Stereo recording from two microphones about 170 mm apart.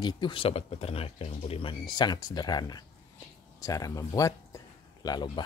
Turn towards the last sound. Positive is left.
turn(degrees=25)  # may be behind; listen again after turning